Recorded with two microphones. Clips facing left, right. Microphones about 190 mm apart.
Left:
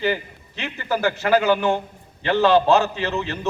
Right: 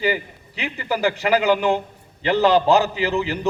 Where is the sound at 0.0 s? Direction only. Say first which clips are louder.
Right 1 dB; 10° right (ahead or behind).